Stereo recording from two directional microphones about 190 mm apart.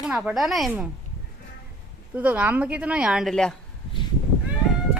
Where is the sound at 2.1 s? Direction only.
10° right (ahead or behind).